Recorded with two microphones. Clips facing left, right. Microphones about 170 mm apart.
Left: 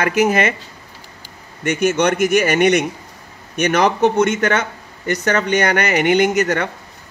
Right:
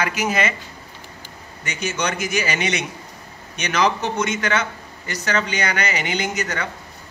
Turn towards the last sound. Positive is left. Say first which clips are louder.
# left 9 dB
turn(degrees=55)  # may be behind; listen again after turning